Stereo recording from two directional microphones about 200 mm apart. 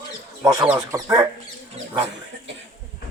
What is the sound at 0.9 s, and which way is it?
Speech, 15° right (ahead or behind).